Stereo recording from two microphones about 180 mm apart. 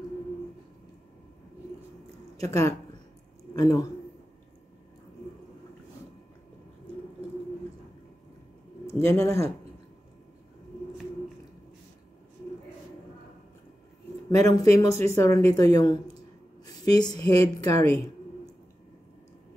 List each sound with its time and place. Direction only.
2.5 s a woman's voice: 15° left (ahead or behind)
9.0 s a woman's voice: 15° left (ahead or behind)
14.5 s a woman's voice: 20° left (ahead or behind)